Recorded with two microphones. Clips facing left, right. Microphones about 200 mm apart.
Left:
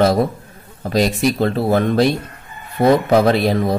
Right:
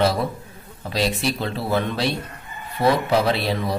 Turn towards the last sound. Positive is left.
turn(degrees=45)  # may be behind; listen again after turning